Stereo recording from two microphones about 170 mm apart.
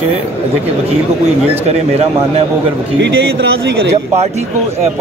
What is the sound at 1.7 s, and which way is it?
Speech, 35° right (ahead or behind).